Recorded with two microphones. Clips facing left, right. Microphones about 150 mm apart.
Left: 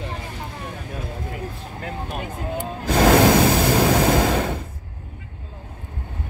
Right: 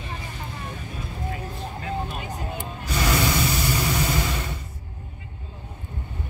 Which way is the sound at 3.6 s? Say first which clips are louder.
Left 8 dB; 90° left.